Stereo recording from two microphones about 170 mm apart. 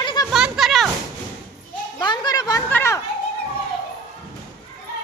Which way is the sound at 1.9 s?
25° left (ahead or behind).